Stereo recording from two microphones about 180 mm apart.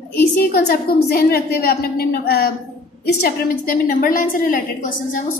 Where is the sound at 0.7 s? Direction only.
60° left (ahead or behind).